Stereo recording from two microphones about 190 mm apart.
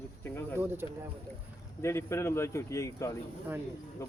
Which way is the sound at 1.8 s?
15° left (ahead or behind).